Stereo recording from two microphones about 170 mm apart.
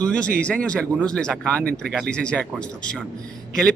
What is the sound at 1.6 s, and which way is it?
Speech, 70° right (ahead or behind).